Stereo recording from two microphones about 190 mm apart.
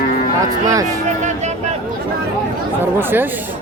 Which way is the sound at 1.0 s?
40° right (ahead or behind).